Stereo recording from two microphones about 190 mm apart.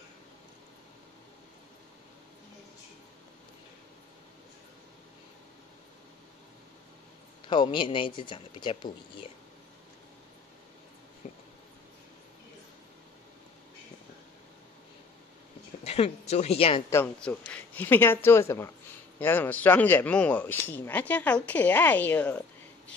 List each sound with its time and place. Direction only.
7.4 s speech: 25° left (ahead or behind)
11.2 s a sound: 40° left (ahead or behind)
15.8 s a woman's voice: 35° left (ahead or behind)
16.9 s a man's voice: 10° left (ahead or behind)